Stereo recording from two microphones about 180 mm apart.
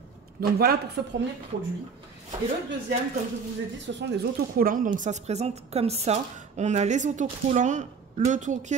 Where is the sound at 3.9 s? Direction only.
75° right (ahead or behind).